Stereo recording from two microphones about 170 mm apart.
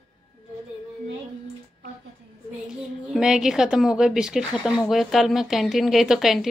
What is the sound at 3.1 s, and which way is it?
A woman's voice, 5° right (ahead or behind).